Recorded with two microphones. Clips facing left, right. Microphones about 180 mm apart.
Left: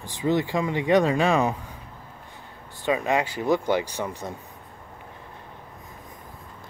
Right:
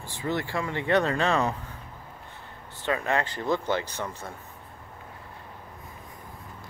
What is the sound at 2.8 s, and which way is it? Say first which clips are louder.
Speech: left 3 dB; 15° left (ahead or behind).